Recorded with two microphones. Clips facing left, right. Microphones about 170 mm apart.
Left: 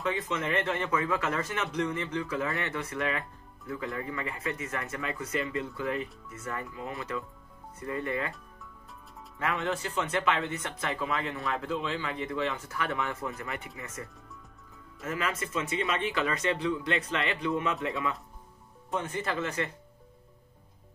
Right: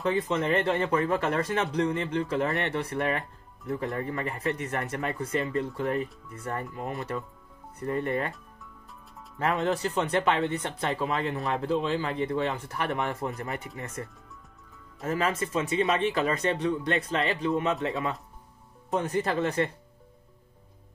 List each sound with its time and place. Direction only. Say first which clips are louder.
0.0 s speech: right 5 dB; 35° right (ahead or behind)
3.7 s speech: right 4 dB; 45° right (ahead or behind)
9.4 s speech: right 5 dB; 35° right (ahead or behind)
15.0 s speech: right 5 dB; 35° right (ahead or behind)